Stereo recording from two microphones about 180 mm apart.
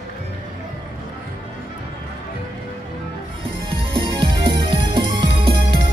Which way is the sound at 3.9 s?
25° right (ahead or behind).